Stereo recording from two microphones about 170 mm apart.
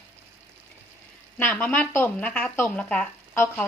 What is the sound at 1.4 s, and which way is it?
Speech, 10° left (ahead or behind).